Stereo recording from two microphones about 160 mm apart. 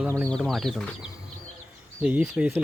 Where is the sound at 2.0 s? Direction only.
5° right (ahead or behind).